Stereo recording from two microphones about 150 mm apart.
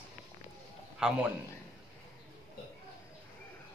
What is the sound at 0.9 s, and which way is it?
Speech, 5° right (ahead or behind).